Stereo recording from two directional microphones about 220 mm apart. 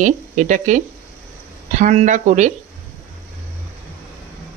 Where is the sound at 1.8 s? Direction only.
35° right (ahead or behind).